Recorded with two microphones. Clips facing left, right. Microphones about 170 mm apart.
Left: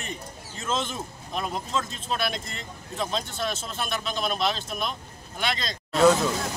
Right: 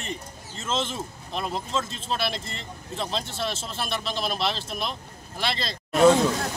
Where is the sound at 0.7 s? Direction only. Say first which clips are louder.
Even; 30° right (ahead or behind).